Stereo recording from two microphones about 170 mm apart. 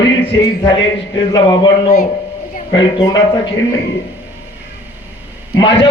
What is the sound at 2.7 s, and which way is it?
Speech, 25° left (ahead or behind).